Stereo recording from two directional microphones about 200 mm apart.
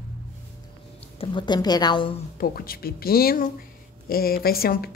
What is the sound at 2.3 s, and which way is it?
Speech, 50° left (ahead or behind).